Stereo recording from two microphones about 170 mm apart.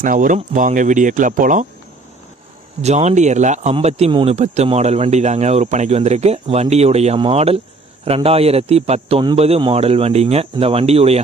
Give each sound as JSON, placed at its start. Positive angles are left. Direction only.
{"t": 0.0, "sound": "speech", "side_deg": -50}
{"t": 2.8, "sound": "speech", "side_deg": -40}